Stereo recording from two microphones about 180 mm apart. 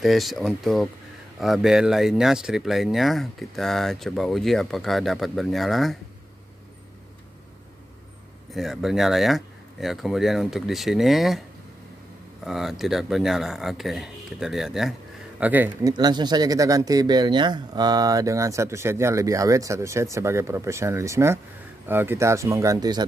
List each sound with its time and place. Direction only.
0.0 s speech: centre (ahead or behind)
8.5 s speech: centre (ahead or behind)
12.4 s speech: centre (ahead or behind)
15.9 s speech: 25° right (ahead or behind)